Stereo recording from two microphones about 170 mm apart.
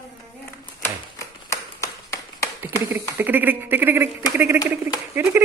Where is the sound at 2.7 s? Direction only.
10° right (ahead or behind).